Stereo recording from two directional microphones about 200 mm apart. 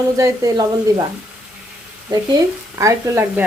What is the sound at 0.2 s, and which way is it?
Speech, 20° right (ahead or behind).